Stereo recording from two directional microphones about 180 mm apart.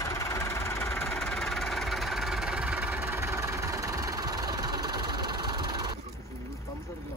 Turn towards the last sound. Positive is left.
turn(degrees=-25)  # may be behind; listen again after turning